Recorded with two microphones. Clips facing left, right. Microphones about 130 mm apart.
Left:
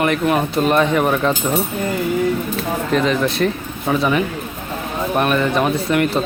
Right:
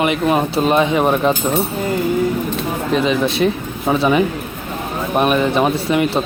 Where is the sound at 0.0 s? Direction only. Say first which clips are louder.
Right 1 dB; 20° right (ahead or behind).